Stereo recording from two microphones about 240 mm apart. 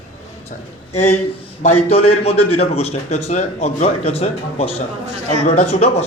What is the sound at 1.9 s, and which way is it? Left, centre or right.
A man's voice, left.